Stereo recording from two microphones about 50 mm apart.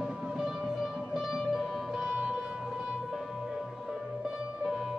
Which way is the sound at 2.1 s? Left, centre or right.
Right.